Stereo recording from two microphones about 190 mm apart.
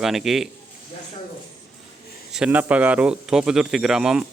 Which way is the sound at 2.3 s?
5° right (ahead or behind).